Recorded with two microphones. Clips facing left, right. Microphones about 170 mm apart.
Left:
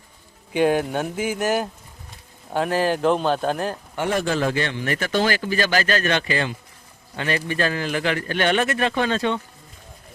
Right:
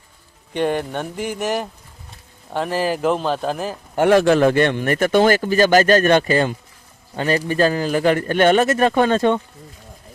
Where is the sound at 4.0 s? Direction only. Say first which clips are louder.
Right 9 dB; 65° right (ahead or behind); by 9.4 s 50° right (ahead or behind).